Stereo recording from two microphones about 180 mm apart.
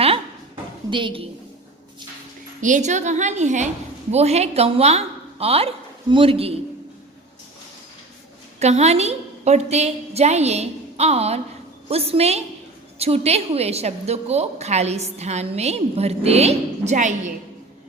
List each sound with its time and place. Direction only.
0.9 s a woman's voice: 25° right (ahead or behind)
2.6 s a woman's voice: 45° right (ahead or behind)
8.5 s a woman's voice: 40° right (ahead or behind)